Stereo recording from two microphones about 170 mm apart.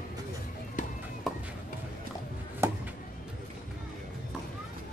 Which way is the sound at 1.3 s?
Centre (ahead or behind).